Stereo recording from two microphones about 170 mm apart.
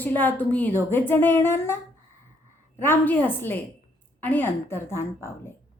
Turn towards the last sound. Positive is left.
turn(degrees=15)  # may be behind; listen again after turning